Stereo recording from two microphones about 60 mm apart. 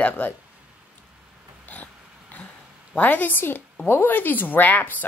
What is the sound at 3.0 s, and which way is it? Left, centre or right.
Speech, left.